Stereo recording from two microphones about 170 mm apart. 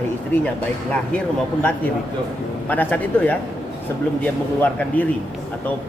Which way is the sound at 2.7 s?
10° left (ahead or behind).